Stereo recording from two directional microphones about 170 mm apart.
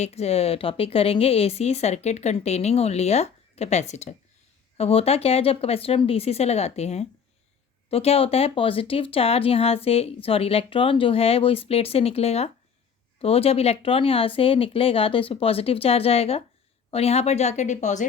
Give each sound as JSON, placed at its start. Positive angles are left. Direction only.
{"t": 0.0, "sound": "speech", "side_deg": 40}